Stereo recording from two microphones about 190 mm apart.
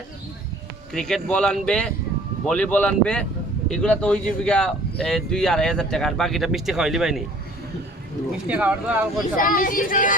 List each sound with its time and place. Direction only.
0.9 s speech: centre (ahead or behind)
8.3 s speech: 5° right (ahead or behind)
9.3 s speech: 45° left (ahead or behind)